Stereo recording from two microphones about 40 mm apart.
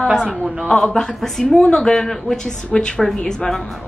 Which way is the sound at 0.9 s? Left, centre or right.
Centre.